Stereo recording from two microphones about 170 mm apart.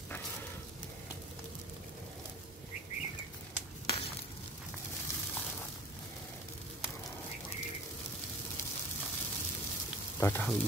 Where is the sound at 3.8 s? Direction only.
30° left (ahead or behind).